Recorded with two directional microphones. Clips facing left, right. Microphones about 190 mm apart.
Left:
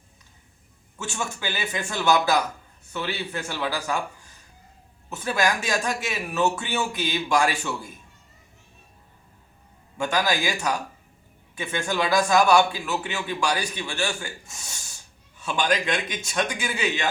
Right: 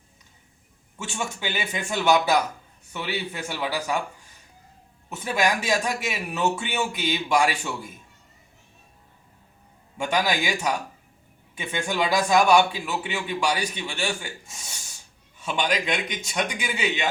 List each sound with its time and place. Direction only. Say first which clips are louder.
1.1 s a man's voice: right 1 dB; 20° right (ahead or behind)
5.0 s a man's voice: even; 15° right (ahead or behind)
10.0 s a man's voice: even; 15° right (ahead or behind)